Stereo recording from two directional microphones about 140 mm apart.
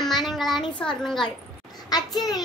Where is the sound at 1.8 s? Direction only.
30° left (ahead or behind).